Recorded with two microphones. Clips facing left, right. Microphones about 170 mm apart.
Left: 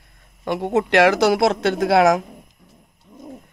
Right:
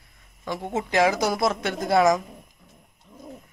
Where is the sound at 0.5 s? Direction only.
65° left (ahead or behind).